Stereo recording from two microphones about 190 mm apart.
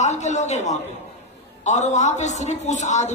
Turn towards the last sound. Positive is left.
turn(degrees=40)  # may be behind; listen again after turning